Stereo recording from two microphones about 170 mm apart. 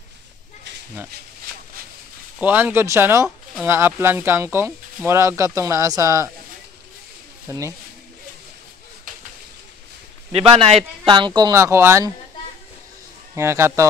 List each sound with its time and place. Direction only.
2.3 s speech: 10° right (ahead or behind)
7.4 s speech: 15° right (ahead or behind)
10.3 s a man's voice: 35° right (ahead or behind); by 12.1 s 15° right (ahead or behind)
13.3 s speech: 15° right (ahead or behind)